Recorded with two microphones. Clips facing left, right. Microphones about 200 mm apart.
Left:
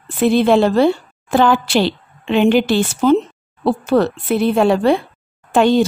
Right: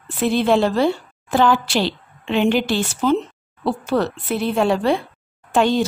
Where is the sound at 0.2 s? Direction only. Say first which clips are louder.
Left 4 dB; 60° left (ahead or behind).